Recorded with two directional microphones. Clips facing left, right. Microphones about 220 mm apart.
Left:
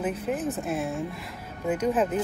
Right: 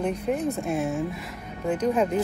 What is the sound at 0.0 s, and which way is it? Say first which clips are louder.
Speech: right 2 dB; 5° left (ahead or behind).